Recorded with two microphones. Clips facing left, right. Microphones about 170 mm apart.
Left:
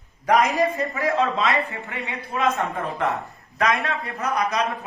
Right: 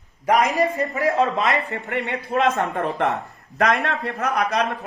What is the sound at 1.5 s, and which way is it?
A man's voice, 65° right (ahead or behind).